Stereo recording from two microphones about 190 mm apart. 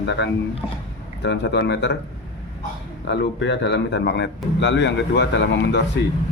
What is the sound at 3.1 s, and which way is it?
Speech, 65° left (ahead or behind).